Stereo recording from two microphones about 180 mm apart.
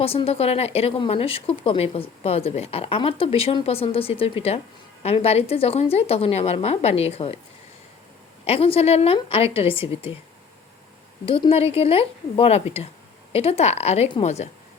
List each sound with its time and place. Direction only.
0.0 s speech: 30° left (ahead or behind)
8.4 s speech: 35° left (ahead or behind)
11.3 s speech: 30° left (ahead or behind)